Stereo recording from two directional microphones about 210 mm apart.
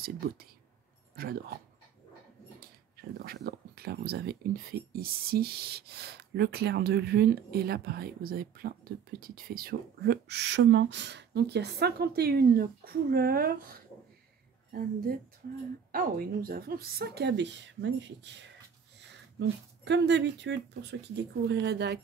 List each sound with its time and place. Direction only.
1.1 s speech: 45° right (ahead or behind)
3.2 s speech: 50° right (ahead or behind)
19.4 s speech: 55° right (ahead or behind)